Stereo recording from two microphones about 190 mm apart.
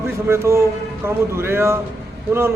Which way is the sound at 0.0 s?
15° right (ahead or behind).